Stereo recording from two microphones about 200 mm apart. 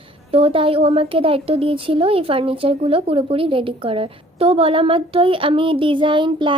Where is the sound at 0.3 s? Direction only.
30° right (ahead or behind).